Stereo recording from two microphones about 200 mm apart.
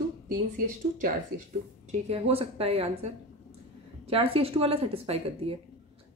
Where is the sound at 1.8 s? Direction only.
30° right (ahead or behind).